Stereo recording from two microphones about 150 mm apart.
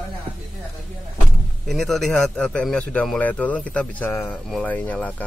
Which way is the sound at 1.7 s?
Centre (ahead or behind).